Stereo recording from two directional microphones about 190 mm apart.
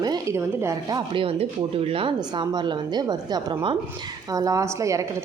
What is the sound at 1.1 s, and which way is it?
A woman's voice, 30° right (ahead or behind).